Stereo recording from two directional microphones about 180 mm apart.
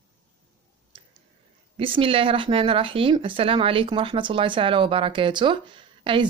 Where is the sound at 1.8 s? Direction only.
30° right (ahead or behind).